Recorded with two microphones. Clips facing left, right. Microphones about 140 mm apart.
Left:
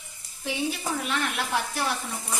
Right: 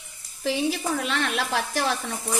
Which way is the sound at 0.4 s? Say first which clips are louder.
Right 4 dB; 90° right.